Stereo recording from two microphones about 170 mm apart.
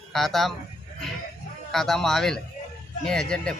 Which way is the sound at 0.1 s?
Centre (ahead or behind).